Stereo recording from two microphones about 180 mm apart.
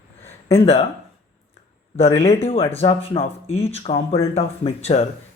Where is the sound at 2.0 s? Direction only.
35° left (ahead or behind).